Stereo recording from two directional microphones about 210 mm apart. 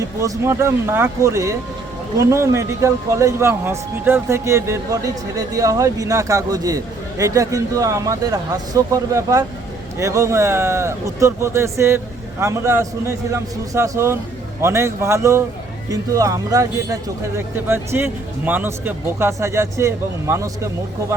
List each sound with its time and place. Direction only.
0.0 s a man's voice: 15° right (ahead or behind)